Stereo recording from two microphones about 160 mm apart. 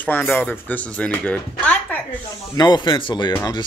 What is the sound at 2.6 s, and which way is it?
Speech, 30° left (ahead or behind).